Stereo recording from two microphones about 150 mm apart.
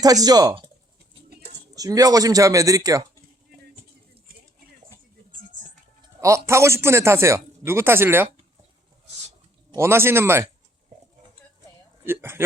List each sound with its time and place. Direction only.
0.0 s speech: 25° right (ahead or behind)
1.7 s speech: 25° right (ahead or behind)
5.5 s music: 55° right (ahead or behind)
6.2 s speech: 20° right (ahead or behind)
9.7 s speech: 15° right (ahead or behind)
12.0 s speech: 15° right (ahead or behind)